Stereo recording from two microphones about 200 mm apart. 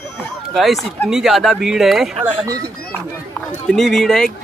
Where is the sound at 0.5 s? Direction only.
Centre (ahead or behind).